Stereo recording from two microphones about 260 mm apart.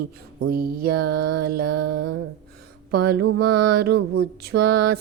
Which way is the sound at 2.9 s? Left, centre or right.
Right.